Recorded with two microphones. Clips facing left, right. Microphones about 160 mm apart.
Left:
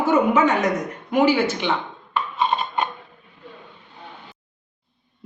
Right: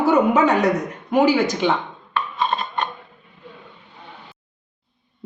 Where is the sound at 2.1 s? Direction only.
10° left (ahead or behind).